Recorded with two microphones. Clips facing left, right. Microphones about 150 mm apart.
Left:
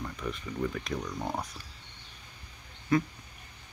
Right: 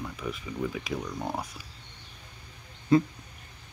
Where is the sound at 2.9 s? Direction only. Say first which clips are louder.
Right 5 dB; 25° right (ahead or behind).